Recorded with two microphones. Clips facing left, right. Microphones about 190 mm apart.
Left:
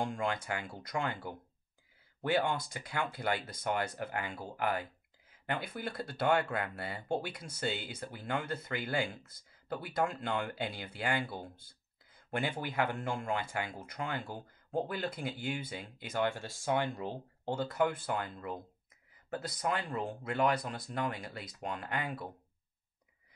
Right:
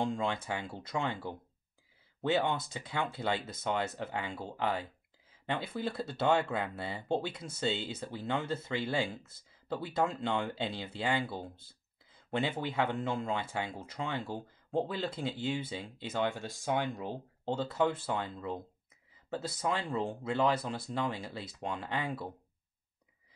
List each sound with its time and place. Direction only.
0.0 s speech: 25° right (ahead or behind)